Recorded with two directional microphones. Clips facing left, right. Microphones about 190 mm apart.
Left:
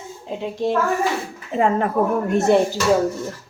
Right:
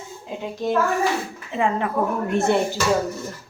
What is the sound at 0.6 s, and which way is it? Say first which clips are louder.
Speech: left 2 dB; 25° left (ahead or behind).